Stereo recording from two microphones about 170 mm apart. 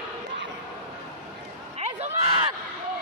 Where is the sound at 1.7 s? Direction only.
40° right (ahead or behind).